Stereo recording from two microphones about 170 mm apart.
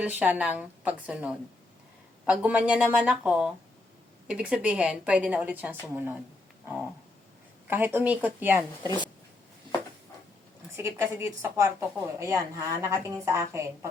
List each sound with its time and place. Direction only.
0.0 s a woman's voice: 10° right (ahead or behind)
7.7 s a woman's voice: 10° right (ahead or behind)
10.8 s a woman's voice: 15° right (ahead or behind)